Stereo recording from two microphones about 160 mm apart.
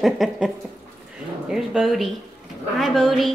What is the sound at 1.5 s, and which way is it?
A woman's voice, centre (ahead or behind).